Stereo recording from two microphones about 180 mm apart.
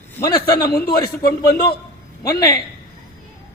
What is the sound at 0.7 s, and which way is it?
Speech, 60° left (ahead or behind).